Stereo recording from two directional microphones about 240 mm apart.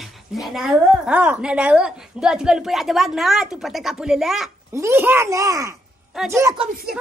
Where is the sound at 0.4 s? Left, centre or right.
Centre.